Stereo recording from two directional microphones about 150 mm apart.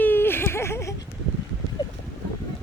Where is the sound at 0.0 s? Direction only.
15° left (ahead or behind).